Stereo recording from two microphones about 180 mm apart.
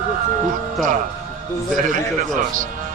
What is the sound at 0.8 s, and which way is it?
Speech, centre (ahead or behind).